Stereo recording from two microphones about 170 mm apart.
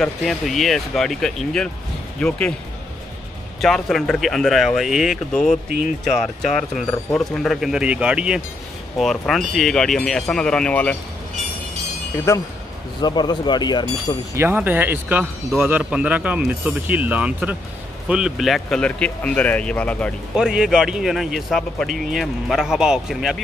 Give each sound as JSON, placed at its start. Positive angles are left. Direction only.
{"t": 0.0, "sound": "speech", "side_deg": 0}
{"t": 3.6, "sound": "speech", "side_deg": 0}
{"t": 13.0, "sound": "speech", "side_deg": 25}
{"t": 14.3, "sound": "speech", "side_deg": -15}
{"t": 20.3, "sound": "speech", "side_deg": -5}